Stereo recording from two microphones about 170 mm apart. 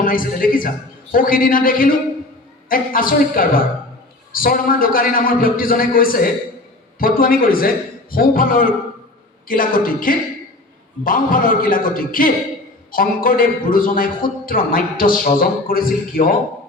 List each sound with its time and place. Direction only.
0.0 s a man's voice: 55° left (ahead or behind)